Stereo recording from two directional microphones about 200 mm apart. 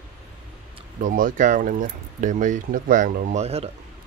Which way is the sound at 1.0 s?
40° right (ahead or behind).